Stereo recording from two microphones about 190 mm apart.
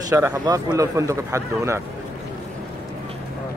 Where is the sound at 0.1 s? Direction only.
15° right (ahead or behind).